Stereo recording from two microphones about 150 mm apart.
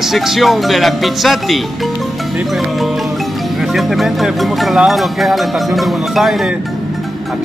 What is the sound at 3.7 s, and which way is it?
Speech, centre (ahead or behind).